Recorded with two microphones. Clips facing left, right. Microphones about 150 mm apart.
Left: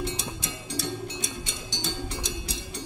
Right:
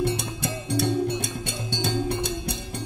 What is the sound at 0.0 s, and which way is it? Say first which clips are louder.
Music: right 7 dB; 60° right (ahead or behind).